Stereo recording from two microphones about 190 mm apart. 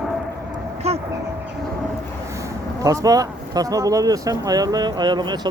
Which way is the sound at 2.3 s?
15° right (ahead or behind).